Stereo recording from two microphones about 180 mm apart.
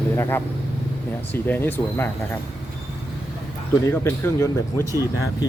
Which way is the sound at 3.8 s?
15° left (ahead or behind).